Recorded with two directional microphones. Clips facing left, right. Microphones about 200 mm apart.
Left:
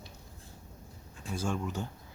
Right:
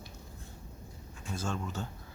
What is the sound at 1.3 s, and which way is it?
Speech, 10° left (ahead or behind).